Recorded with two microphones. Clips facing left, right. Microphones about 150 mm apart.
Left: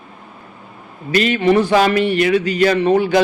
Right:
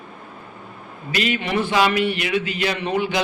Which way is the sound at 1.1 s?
45° left (ahead or behind).